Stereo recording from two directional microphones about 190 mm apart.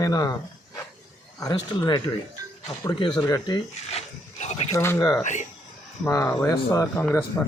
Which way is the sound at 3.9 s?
35° left (ahead or behind).